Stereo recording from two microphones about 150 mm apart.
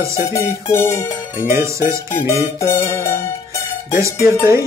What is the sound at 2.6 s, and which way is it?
Music, 20° left (ahead or behind).